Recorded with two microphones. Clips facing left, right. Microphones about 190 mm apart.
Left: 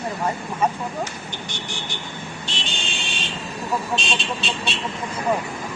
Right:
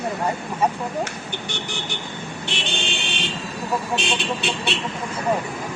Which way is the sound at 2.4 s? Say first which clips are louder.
Right 6 dB; 60° right (ahead or behind).